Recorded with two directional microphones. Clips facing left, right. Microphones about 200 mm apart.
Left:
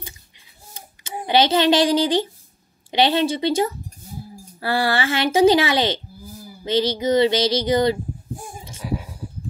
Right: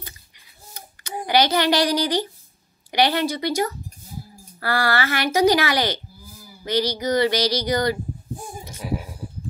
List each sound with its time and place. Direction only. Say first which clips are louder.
1.1 s speech: left 2 dB; 25° left (ahead or behind)